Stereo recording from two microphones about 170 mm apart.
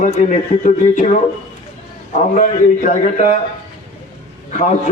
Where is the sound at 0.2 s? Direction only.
45° left (ahead or behind).